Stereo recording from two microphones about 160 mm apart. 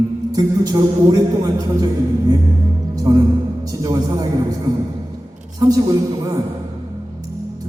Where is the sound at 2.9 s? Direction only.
20° right (ahead or behind).